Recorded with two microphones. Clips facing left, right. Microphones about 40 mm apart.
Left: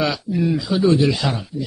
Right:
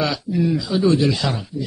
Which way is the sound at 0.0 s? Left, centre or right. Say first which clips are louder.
Even; centre.